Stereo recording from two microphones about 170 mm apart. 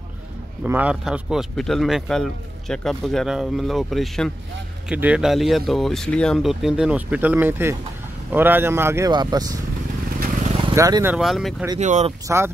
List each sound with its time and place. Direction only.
0.7 s speech: 10° right (ahead or behind)
10.7 s speech: 20° right (ahead or behind)
11.1 s speech: centre (ahead or behind)
11.8 s speech: 45° right (ahead or behind)
12.3 s speech: 15° right (ahead or behind)